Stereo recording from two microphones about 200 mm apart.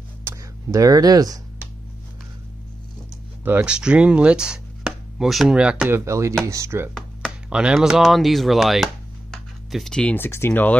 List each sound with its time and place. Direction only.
0.2 s a sound: 15° right (ahead or behind)
3.4 s speech: 5° right (ahead or behind)
6.9 s speech: 5° left (ahead or behind)